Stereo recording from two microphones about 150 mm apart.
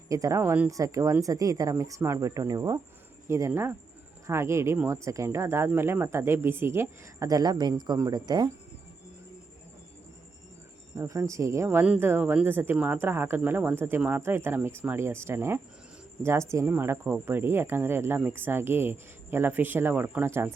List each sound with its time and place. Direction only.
0.1 s a woman's voice: 20° right (ahead or behind)
10.9 s speech: 20° right (ahead or behind)